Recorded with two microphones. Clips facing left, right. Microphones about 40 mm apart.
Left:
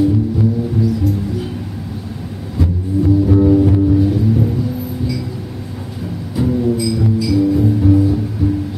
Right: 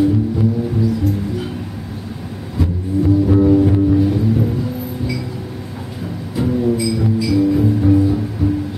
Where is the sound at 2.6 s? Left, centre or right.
Centre.